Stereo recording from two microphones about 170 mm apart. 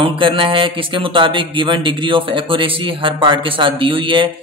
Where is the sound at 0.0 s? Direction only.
30° right (ahead or behind).